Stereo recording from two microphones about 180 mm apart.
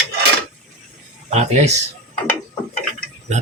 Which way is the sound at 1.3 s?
40° right (ahead or behind).